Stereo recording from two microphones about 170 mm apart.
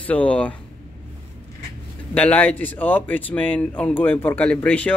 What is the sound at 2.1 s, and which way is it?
Speech, 10° left (ahead or behind).